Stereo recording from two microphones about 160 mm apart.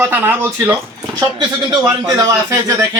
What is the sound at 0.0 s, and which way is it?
Speech, 10° right (ahead or behind).